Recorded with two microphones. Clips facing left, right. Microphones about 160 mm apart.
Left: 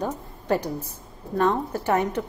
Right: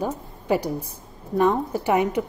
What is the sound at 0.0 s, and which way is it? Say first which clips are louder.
A woman's voice: right 2 dB; 10° right (ahead or behind).